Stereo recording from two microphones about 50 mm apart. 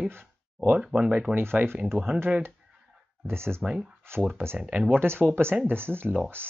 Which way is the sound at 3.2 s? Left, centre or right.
Right.